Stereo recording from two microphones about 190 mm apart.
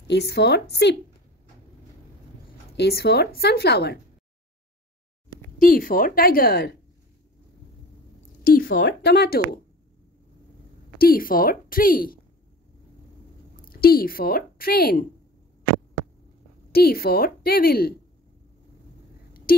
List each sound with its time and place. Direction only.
0.1 s speech: 60° left (ahead or behind)
2.8 s speech: 60° left (ahead or behind)
5.6 s a woman's voice: 50° left (ahead or behind)
8.5 s a sound: 50° left (ahead or behind)
8.8 s speech: 60° left (ahead or behind)
11.0 s a woman's voice: 50° left (ahead or behind)
13.7 s speech: 50° left (ahead or behind)
16.7 s a woman's voice: 55° left (ahead or behind)